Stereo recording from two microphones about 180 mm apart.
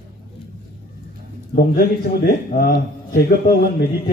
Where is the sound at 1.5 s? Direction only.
55° left (ahead or behind).